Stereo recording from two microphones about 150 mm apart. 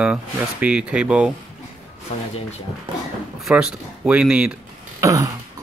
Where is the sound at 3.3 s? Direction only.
5° right (ahead or behind).